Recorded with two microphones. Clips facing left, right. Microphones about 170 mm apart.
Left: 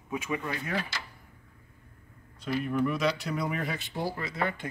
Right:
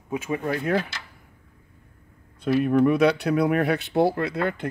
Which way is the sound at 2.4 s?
60° right (ahead or behind).